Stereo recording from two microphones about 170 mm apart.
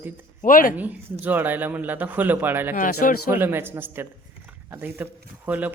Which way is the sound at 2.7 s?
55° left (ahead or behind).